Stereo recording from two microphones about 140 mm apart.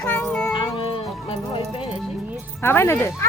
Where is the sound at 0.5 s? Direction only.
35° left (ahead or behind).